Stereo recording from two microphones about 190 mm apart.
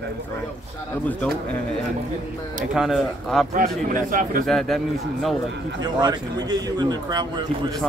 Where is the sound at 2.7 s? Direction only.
Centre (ahead or behind).